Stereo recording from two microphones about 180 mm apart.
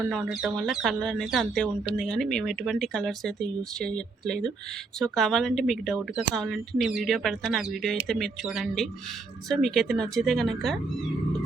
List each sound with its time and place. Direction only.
0.0 s speech: centre (ahead or behind)